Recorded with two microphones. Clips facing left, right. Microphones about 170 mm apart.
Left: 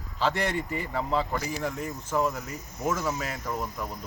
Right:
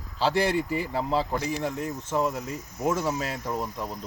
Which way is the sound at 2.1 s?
10° right (ahead or behind).